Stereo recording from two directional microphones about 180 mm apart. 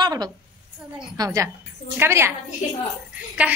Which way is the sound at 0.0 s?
20° right (ahead or behind).